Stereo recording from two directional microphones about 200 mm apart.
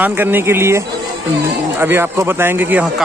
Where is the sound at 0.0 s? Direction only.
10° right (ahead or behind).